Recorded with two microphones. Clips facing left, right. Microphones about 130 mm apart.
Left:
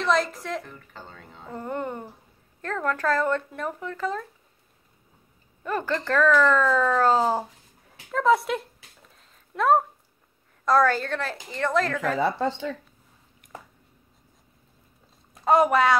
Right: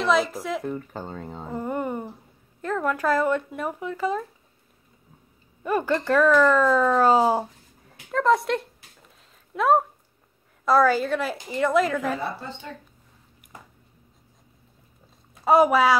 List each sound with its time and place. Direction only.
0.0 s speech: 5° right (ahead or behind)
0.7 s speech: 40° right (ahead or behind)
1.5 s a sound: 10° right (ahead or behind)
2.6 s speech: 10° right (ahead or behind)
5.6 s speech: 10° right (ahead or behind)
8.1 s speech: centre (ahead or behind)
12.2 s a woman's voice: 90° left
15.4 s speech: 5° right (ahead or behind)